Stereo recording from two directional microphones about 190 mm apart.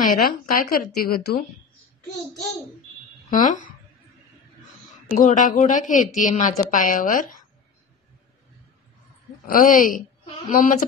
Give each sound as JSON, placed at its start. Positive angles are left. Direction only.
{"t": 0.0, "sound": "a woman's voice", "side_deg": 45}
{"t": 3.3, "sound": "speech", "side_deg": 45}
{"t": 5.1, "sound": "a woman's voice", "side_deg": 45}
{"t": 9.5, "sound": "a woman's voice", "side_deg": 45}